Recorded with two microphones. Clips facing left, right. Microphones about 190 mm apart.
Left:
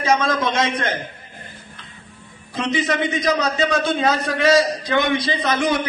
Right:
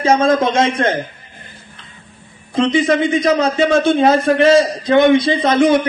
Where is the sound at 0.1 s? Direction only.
30° right (ahead or behind).